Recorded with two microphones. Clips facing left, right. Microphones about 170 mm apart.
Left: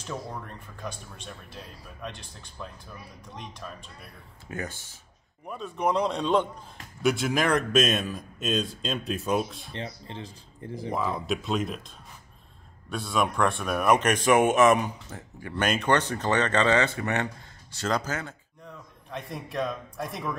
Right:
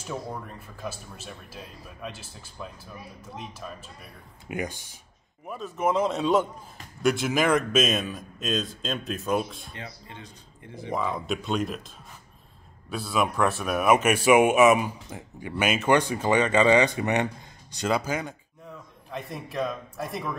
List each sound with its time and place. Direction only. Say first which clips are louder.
0.0 s a man's voice: right 2 dB; 10° right (ahead or behind)
4.5 s speech: right 4 dB; 15° right (ahead or behind)
5.5 s a man's voice: right 1 dB; 5° right (ahead or behind)
9.8 s speech: left 7 dB; 30° left (ahead or behind)
10.9 s a man's voice: even; centre (ahead or behind)
12.9 s speech: right 1 dB; centre (ahead or behind)
19.0 s a man's voice: right 1 dB; centre (ahead or behind)